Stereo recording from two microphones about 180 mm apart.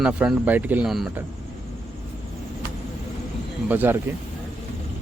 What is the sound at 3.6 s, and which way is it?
Speech, 10° right (ahead or behind).